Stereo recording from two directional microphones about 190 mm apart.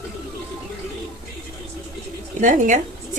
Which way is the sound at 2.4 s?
40° right (ahead or behind).